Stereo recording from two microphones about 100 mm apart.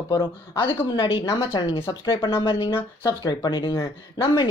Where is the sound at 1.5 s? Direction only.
50° left (ahead or behind).